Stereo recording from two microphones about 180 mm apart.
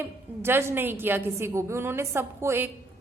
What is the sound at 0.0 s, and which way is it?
A woman's voice, 15° right (ahead or behind).